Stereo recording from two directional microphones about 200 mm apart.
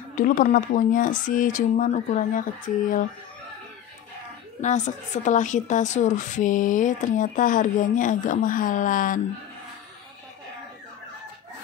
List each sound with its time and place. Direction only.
0.1 s a woman's voice: 40° left (ahead or behind)
4.6 s a woman's voice: 35° left (ahead or behind)